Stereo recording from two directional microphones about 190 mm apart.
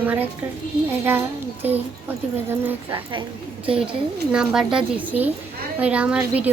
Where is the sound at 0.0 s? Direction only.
10° right (ahead or behind).